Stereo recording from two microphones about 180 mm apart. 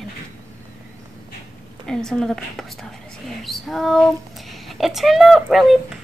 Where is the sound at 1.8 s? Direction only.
5° left (ahead or behind).